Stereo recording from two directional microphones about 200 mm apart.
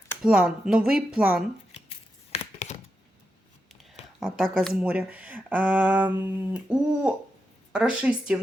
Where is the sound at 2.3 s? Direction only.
35° left (ahead or behind).